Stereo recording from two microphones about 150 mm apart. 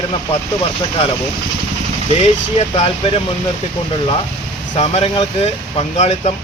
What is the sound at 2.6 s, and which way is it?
Speech, 45° left (ahead or behind).